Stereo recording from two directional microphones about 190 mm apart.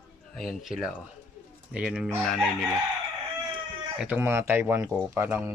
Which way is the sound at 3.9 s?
10° right (ahead or behind).